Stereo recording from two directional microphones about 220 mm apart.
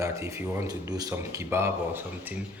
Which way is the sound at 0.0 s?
15° right (ahead or behind).